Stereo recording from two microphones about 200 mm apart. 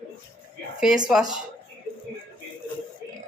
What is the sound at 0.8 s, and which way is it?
Speech, 5° right (ahead or behind).